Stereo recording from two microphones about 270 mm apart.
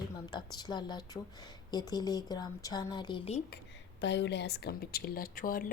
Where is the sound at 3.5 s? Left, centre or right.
Left.